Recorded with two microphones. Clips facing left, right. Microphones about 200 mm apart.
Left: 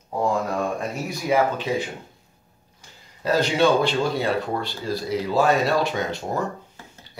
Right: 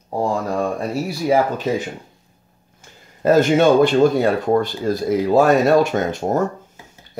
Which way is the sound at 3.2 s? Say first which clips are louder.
Right 6 dB; 50° right (ahead or behind).